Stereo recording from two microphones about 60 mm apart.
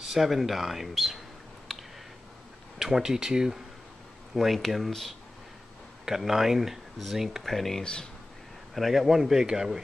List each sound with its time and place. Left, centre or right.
0.1 s speech: centre
1.7 s a sound: centre
2.8 s speech: centre
4.4 s speech: centre
7.8 s speech: centre
8.7 s speech: centre